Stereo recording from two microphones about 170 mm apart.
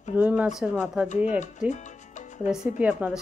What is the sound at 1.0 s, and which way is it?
Music, 45° left (ahead or behind).